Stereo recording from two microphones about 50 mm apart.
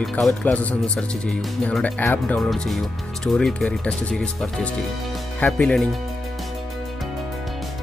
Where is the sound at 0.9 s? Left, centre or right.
Centre.